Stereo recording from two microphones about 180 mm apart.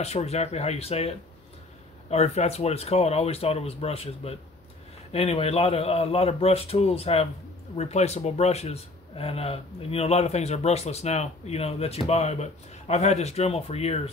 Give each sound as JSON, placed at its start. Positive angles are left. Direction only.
{"t": 0.0, "sound": "speech", "side_deg": 35}